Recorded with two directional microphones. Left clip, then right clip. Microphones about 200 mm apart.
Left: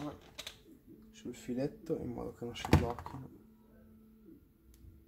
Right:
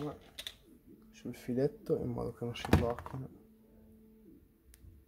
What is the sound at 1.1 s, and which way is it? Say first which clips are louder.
Speech: right 3 dB; 40° right (ahead or behind).